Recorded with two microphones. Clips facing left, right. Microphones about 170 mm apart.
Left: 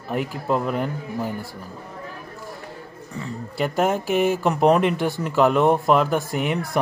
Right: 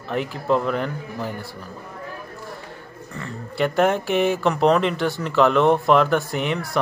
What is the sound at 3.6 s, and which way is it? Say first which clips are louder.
Speech: right 2 dB; 5° left (ahead or behind).